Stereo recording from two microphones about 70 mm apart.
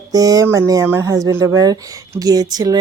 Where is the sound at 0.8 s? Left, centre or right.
Right.